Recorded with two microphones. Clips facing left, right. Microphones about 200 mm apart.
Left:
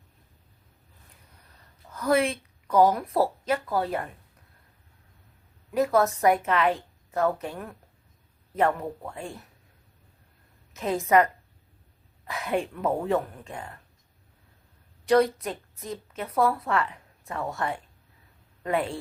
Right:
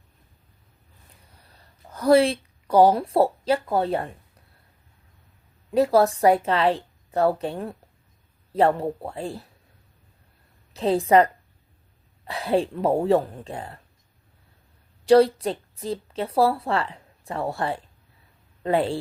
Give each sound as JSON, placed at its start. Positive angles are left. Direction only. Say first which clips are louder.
{"t": 1.4, "sound": "a woman's voice", "louder": "right 5 dB", "side_deg": -35}
{"t": 5.7, "sound": "a woman's voice", "louder": "right 4 dB", "side_deg": -30}
{"t": 10.8, "sound": "a woman's voice", "louder": "right 4 dB", "side_deg": -30}
{"t": 15.0, "sound": "a woman's voice", "louder": "right 5 dB", "side_deg": -30}